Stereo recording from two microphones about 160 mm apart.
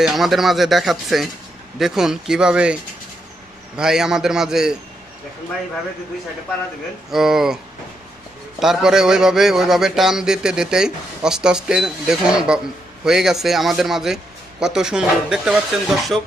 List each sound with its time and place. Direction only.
0.0 s a man's voice: centre (ahead or behind)
3.8 s a man's voice: 5° right (ahead or behind)
7.1 s a man's voice: 5° right (ahead or behind)